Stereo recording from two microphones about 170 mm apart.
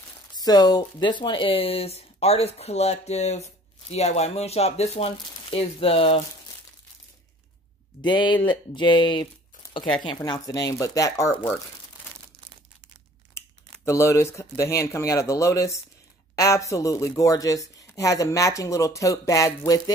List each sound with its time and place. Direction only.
0.3 s speech: 25° left (ahead or behind)
8.0 s speech: 25° left (ahead or behind)
13.8 s speech: 15° left (ahead or behind)